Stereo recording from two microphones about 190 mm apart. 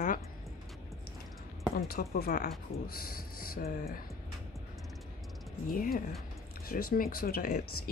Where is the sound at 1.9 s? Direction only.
50° left (ahead or behind).